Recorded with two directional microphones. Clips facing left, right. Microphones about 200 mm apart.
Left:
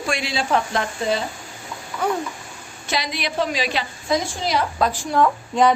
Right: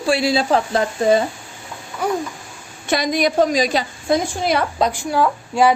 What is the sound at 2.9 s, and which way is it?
A woman's voice, 50° right (ahead or behind).